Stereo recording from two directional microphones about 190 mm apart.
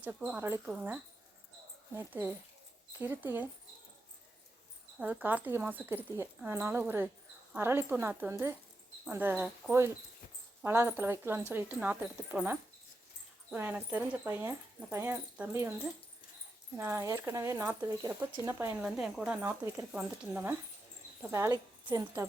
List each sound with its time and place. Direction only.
0.0 s speech: 10° right (ahead or behind)
2.0 s speech: 10° right (ahead or behind)
4.9 s speech: 10° right (ahead or behind)
18.8 s a woman's voice: 5° right (ahead or behind)